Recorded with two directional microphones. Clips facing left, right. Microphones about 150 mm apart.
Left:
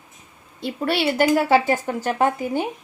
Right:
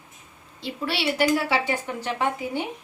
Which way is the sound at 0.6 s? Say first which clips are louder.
Left 6 dB; 50° left (ahead or behind).